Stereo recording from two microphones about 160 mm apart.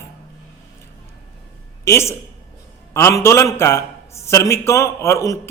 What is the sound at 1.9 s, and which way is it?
A man's voice, 15° left (ahead or behind).